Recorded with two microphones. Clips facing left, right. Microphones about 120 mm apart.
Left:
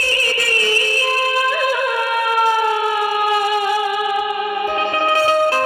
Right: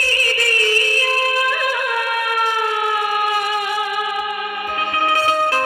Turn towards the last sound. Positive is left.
turn(degrees=30)  # may be behind; listen again after turning